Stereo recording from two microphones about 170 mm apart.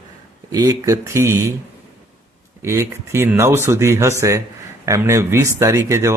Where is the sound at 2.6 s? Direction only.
15° right (ahead or behind).